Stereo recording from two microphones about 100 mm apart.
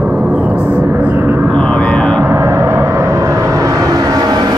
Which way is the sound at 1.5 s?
10° left (ahead or behind).